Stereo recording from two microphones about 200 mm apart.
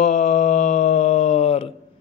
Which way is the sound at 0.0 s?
35° left (ahead or behind).